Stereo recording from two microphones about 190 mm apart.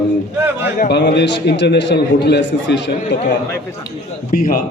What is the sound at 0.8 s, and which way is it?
A man's voice, 60° left (ahead or behind).